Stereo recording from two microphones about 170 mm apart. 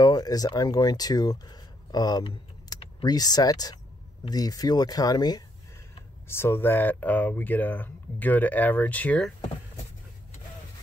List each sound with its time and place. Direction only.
0.0 s speech: 25° left (ahead or behind)